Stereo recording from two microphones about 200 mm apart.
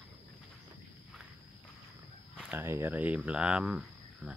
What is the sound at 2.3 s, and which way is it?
Speech, 10° right (ahead or behind).